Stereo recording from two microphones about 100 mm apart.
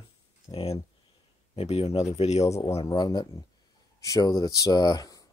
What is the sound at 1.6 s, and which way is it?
Speech, 90° left.